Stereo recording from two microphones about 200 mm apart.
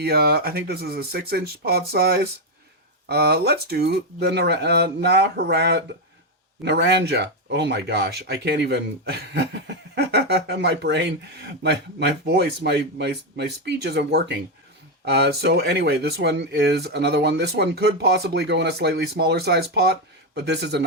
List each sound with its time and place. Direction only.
0.0 s speech: 50° right (ahead or behind)